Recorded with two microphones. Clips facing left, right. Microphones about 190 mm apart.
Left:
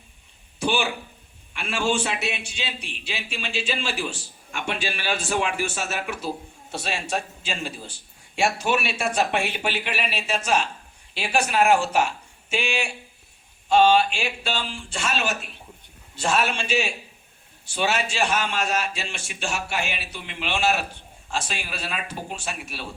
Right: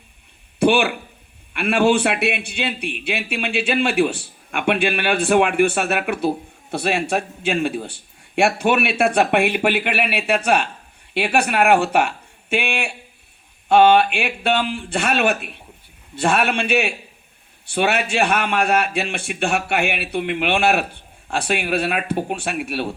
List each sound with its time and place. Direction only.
0.6 s a man's voice: 60° right (ahead or behind)